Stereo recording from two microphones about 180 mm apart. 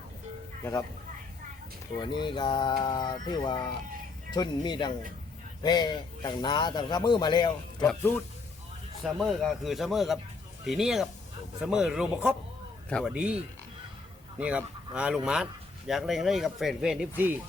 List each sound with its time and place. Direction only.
0.6 s speech: 20° left (ahead or behind)
2.0 s speech: 25° left (ahead or behind)
9.0 s speech: centre (ahead or behind)